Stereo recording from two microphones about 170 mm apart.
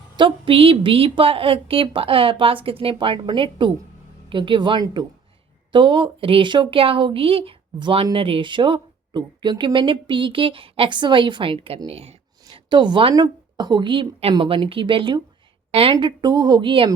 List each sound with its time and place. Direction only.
0.2 s a woman's voice: 30° right (ahead or behind)